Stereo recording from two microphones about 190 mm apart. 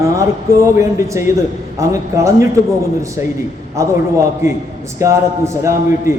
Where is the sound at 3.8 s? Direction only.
15° right (ahead or behind).